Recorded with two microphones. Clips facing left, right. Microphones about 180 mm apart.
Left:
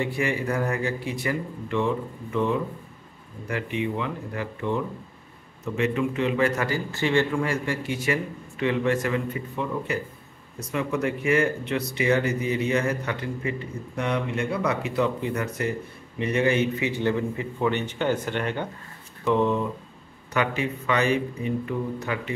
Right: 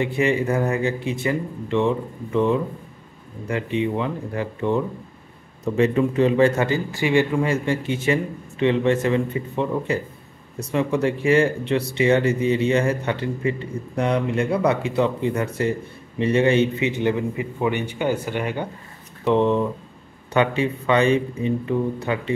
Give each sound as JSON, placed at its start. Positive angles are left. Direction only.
{"t": 0.0, "sound": "speech", "side_deg": -25}
{"t": 3.4, "sound": "a man's voice", "side_deg": -30}
{"t": 19.2, "sound": "speech", "side_deg": -25}